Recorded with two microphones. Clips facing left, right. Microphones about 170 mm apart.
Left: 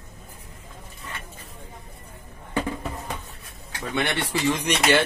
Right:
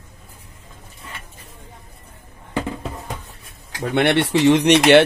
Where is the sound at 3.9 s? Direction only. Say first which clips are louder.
Right 9 dB; 65° right (ahead or behind).